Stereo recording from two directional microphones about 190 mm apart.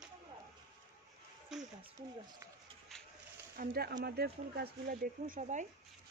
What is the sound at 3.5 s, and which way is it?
Speech, 50° right (ahead or behind).